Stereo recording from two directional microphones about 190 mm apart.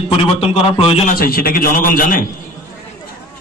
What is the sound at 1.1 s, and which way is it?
A man's voice, 50° left (ahead or behind).